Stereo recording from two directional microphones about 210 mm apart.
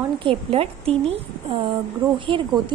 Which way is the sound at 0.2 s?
25° right (ahead or behind).